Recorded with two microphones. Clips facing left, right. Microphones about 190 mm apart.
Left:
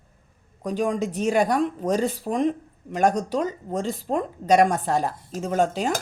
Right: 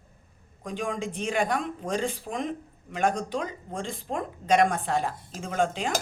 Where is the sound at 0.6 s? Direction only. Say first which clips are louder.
Left 7 dB; 40° left (ahead or behind).